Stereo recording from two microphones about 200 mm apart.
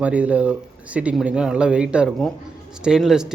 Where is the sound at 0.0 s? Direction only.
5° right (ahead or behind).